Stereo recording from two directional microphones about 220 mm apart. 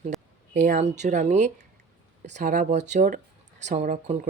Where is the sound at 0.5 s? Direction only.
35° right (ahead or behind).